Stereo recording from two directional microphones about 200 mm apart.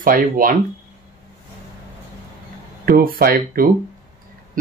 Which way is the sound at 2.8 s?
50° right (ahead or behind).